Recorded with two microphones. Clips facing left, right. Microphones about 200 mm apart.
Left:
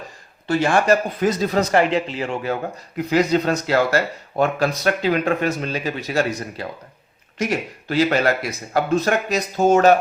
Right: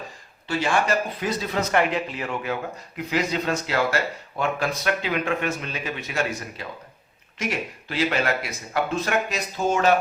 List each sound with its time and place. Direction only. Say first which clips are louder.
0.4 s speech: left 6 dB; 45° left (ahead or behind)
1.7 s a man's voice: left 5 dB; 30° left (ahead or behind)
3.1 s speech: left 7 dB; 40° left (ahead or behind)
7.9 s speech: left 6 dB; 40° left (ahead or behind)